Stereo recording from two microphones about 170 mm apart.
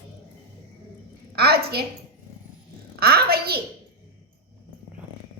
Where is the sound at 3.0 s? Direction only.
65° right (ahead or behind).